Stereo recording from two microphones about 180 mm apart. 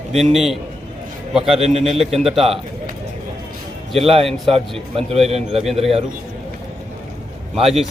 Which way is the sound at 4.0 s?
30° right (ahead or behind).